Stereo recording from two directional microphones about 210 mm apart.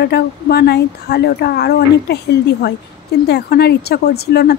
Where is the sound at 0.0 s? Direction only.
50° left (ahead or behind).